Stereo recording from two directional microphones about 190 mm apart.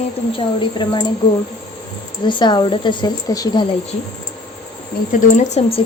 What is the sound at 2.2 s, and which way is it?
A woman's voice, 25° left (ahead or behind).